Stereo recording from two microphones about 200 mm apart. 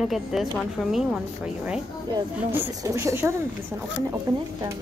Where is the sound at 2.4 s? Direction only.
10° right (ahead or behind).